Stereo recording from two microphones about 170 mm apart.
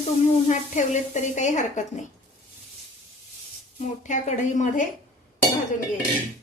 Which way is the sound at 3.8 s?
45° left (ahead or behind).